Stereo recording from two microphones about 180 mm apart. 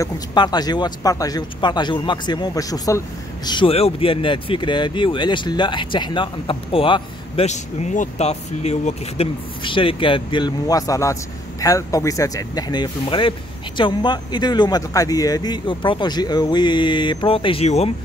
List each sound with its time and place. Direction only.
0.0 s speech: 25° left (ahead or behind)